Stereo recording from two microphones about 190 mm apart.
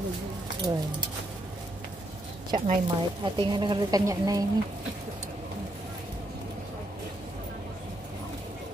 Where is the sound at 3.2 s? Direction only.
25° right (ahead or behind).